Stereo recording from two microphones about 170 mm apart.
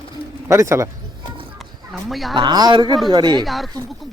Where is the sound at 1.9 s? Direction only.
Centre (ahead or behind).